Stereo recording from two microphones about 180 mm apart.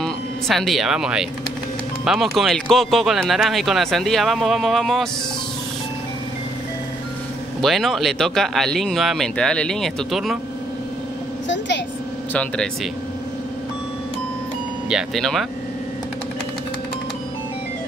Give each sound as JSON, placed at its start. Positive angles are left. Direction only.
{"t": 0.0, "sound": "speech", "side_deg": 0}
{"t": 7.6, "sound": "speech", "side_deg": 0}
{"t": 11.4, "sound": "a sound", "side_deg": 80}
{"t": 14.9, "sound": "speech", "side_deg": 0}